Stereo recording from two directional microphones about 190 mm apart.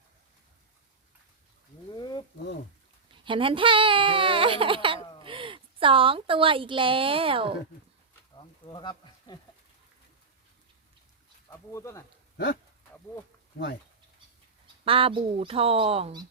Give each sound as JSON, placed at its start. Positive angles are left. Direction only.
{"t": 2.0, "sound": "a sound", "side_deg": 25}
{"t": 3.2, "sound": "speech", "side_deg": -25}
{"t": 8.6, "sound": "speech", "side_deg": 25}
{"t": 11.7, "sound": "speech", "side_deg": 15}
{"t": 14.8, "sound": "speech", "side_deg": -30}